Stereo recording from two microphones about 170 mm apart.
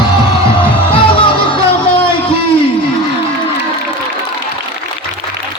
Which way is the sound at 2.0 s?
30° left (ahead or behind).